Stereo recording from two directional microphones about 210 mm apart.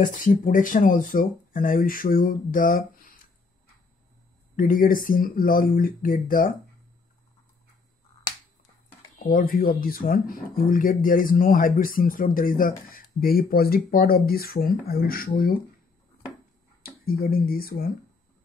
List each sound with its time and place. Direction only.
0.0 s speech: 40° left (ahead or behind)
4.6 s speech: 40° left (ahead or behind)
9.2 s speech: 45° left (ahead or behind)
16.8 s speech: 45° left (ahead or behind)